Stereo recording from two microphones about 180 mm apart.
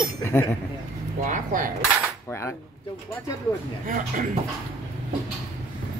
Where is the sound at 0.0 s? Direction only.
15° left (ahead or behind).